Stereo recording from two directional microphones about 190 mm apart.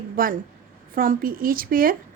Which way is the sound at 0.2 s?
50° right (ahead or behind).